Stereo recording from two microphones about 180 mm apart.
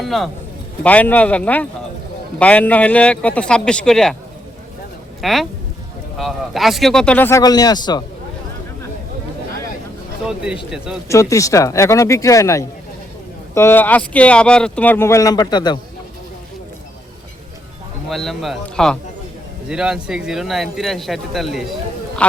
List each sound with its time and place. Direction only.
0.0 s speech: centre (ahead or behind)
5.2 s speech: centre (ahead or behind); by 8.0 s 25° left (ahead or behind)
10.2 s speech: 5° right (ahead or behind)
11.1 s speech: 15° left (ahead or behind)
18.1 s speech: centre (ahead or behind)